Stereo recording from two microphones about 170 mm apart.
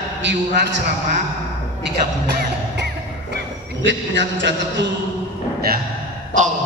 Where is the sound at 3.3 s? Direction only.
90° right.